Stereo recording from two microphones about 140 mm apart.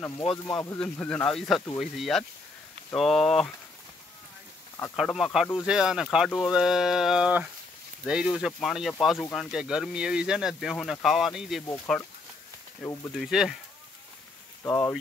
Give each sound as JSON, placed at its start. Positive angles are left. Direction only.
{"t": 0.2, "sound": "speech", "side_deg": 35}
{"t": 0.8, "sound": "speech", "side_deg": 15}
{"t": 4.9, "sound": "speech", "side_deg": 0}
{"t": 11.6, "sound": "speech", "side_deg": 20}
{"t": 13.1, "sound": "speech", "side_deg": 0}
{"t": 14.6, "sound": "speech", "side_deg": 25}